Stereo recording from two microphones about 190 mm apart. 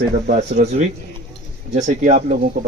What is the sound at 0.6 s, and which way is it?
Speech, 35° right (ahead or behind).